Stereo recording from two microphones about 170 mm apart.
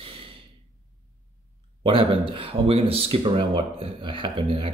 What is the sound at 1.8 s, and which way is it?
Speech, 30° right (ahead or behind).